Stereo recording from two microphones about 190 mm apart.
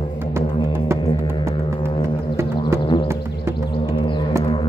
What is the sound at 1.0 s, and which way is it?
Music, 25° left (ahead or behind).